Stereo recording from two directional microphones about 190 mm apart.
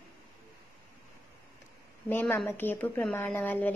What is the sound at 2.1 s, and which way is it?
A woman's voice, 10° left (ahead or behind).